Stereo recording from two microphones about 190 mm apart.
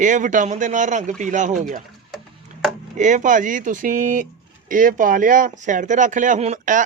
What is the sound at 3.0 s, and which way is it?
Speech, 40° right (ahead or behind).